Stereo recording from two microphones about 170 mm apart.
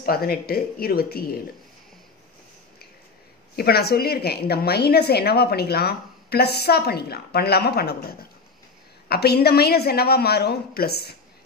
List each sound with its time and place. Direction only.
0.0 s speech: 65° left (ahead or behind)
3.5 s a woman's voice: 65° left (ahead or behind)